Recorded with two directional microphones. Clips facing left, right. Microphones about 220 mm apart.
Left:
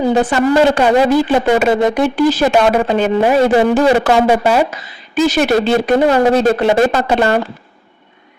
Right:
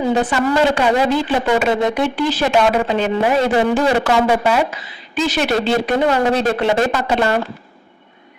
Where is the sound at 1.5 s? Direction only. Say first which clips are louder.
Left 4 dB; 45° left (ahead or behind).